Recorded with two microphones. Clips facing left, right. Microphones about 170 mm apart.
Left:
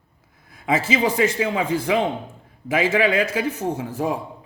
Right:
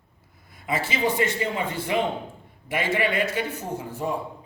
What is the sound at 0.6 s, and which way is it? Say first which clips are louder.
A man's voice: left 5 dB; 90° left.